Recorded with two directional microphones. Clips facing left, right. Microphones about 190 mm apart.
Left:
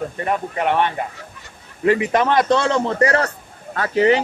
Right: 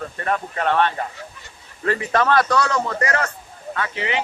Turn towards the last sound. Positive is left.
turn(degrees=40)  # may be behind; listen again after turning